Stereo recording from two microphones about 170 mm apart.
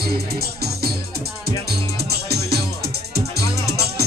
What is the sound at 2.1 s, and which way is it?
Music, 70° right (ahead or behind).